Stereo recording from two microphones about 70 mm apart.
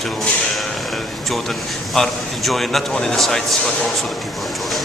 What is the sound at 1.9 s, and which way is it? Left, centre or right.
Speech, centre.